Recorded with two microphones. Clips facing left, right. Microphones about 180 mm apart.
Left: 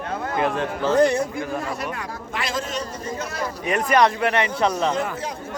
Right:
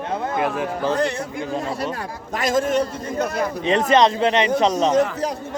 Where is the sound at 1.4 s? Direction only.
25° right (ahead or behind).